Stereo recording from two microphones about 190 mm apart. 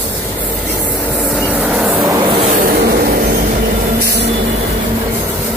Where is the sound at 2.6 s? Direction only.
55° right (ahead or behind).